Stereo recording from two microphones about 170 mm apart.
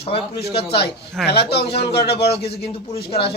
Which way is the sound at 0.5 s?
75° left (ahead or behind).